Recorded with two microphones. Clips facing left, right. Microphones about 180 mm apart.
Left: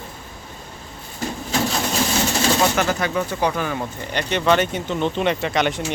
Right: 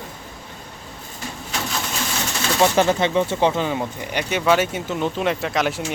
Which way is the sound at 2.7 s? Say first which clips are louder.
Right 4 dB; 30° right (ahead or behind).